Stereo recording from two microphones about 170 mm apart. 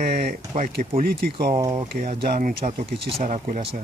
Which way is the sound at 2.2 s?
55° right (ahead or behind).